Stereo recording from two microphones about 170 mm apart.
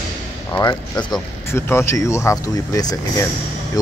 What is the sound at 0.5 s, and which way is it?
Speech, 20° left (ahead or behind).